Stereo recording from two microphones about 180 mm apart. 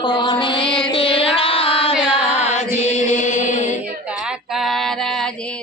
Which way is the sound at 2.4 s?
40° left (ahead or behind).